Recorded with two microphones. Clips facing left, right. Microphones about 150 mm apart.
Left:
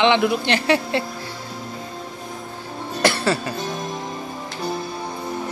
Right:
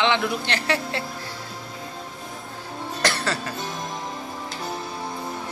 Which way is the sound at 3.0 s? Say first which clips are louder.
Left 6 dB; 10° left (ahead or behind).